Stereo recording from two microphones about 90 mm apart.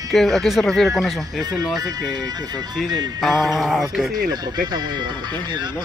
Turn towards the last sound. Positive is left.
turn(degrees=-55)  # may be behind; listen again after turning